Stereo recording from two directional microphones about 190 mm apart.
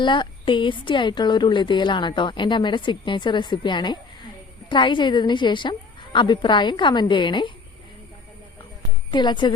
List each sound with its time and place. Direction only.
0.0 s a woman's voice: 25° left (ahead or behind)
9.0 s a woman's voice: 25° left (ahead or behind)